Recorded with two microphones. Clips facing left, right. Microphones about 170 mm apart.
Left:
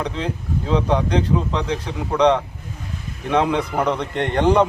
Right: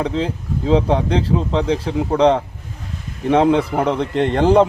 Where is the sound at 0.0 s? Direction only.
30° right (ahead or behind).